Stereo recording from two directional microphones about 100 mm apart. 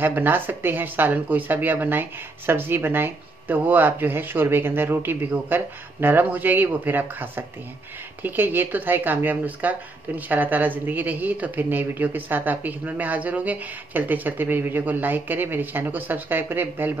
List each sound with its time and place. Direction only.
0.0 s speech: 20° right (ahead or behind)